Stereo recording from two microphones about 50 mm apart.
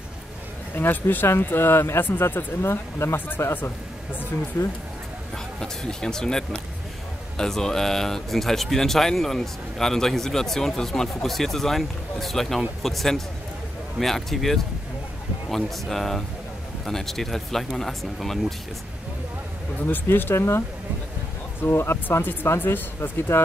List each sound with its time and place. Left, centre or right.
0.7 s speech: left
4.6 s speech: left
5.6 s speech: centre
19.8 s speech: left
20.3 s speech: left
21.5 s speech: left